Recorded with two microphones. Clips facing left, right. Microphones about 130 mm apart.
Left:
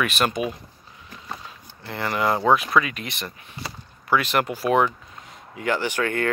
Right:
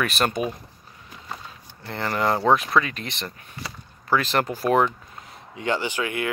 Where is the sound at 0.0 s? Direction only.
40° right (ahead or behind).